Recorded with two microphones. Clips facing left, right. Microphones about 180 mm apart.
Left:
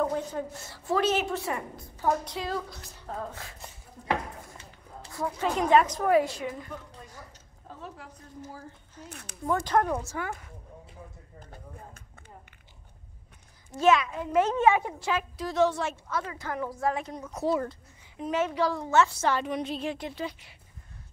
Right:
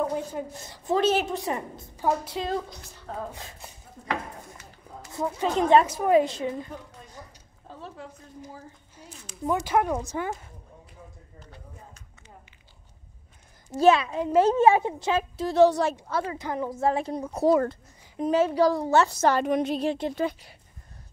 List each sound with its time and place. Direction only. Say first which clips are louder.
0.0 s a woman's voice: even; 10° right (ahead or behind)
3.1 s a woman's voice: right 1 dB; 5° right (ahead or behind)
3.3 s speech: right 1 dB; 20° right (ahead or behind)
5.1 s a woman's voice: right 3 dB; 20° right (ahead or behind)
7.2 s a sound: right 2 dB; 20° right (ahead or behind)
9.1 s speech: left 1 dB; 55° left (ahead or behind)
9.7 s a woman's voice: right 1 dB; 10° right (ahead or behind)
11.3 s a sound: left 3 dB; 50° left (ahead or behind)
13.7 s a woman's voice: right 3 dB; 30° right (ahead or behind)
16.3 s a woman's voice: right 4 dB; 20° right (ahead or behind)
17.5 s a sound: right 7 dB; 50° right (ahead or behind)
18.2 s a woman's voice: right 6 dB; 35° right (ahead or behind)
19.9 s a woman's voice: right 6 dB; 30° right (ahead or behind)
20.2 s speech: right 7 dB; 45° right (ahead or behind)